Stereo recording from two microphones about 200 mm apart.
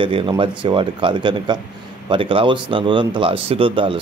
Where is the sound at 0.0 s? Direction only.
25° right (ahead or behind).